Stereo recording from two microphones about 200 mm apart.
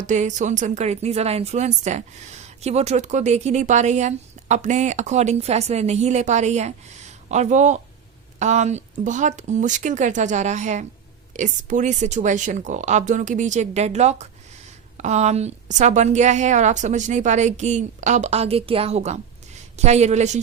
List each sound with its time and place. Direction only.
0.1 s a woman's voice: 35° right (ahead or behind)